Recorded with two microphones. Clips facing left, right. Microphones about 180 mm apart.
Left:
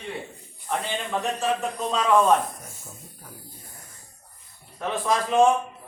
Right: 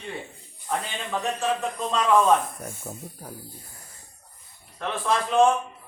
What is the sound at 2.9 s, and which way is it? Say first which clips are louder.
Speech: right 9 dB; 60° right (ahead or behind).